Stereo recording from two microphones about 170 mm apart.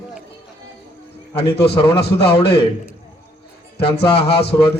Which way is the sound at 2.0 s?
70° left (ahead or behind).